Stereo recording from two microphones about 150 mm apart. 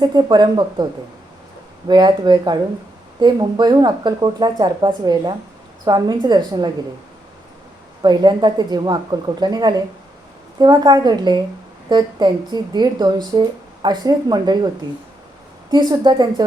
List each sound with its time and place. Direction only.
0.0 s speech: 30° right (ahead or behind)
1.9 s speech: 30° right (ahead or behind)
8.0 s speech: 30° right (ahead or behind)
15.7 s speech: 30° right (ahead or behind)